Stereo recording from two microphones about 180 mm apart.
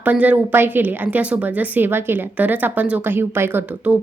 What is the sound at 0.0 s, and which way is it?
A woman's voice, 10° right (ahead or behind).